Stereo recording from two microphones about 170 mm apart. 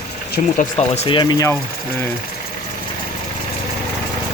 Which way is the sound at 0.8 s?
35° left (ahead or behind).